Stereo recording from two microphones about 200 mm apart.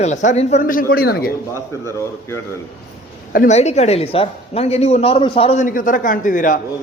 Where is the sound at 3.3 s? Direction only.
40° left (ahead or behind).